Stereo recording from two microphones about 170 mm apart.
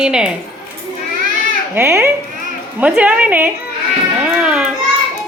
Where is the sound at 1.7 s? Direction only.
15° right (ahead or behind).